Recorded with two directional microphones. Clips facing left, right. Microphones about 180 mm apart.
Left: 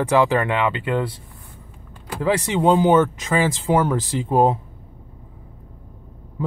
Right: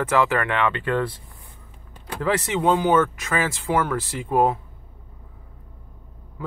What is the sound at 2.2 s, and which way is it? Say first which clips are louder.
Speech: left 3 dB; 15° left (ahead or behind).